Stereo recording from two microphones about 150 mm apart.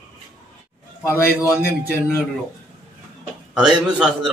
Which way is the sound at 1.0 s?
20° left (ahead or behind).